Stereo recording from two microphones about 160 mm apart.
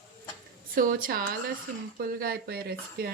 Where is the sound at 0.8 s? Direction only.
60° right (ahead or behind).